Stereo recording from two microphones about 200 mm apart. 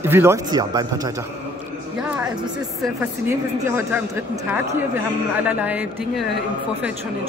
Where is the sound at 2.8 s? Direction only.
10° right (ahead or behind).